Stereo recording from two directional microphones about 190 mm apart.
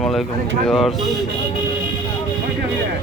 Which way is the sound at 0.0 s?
Centre (ahead or behind).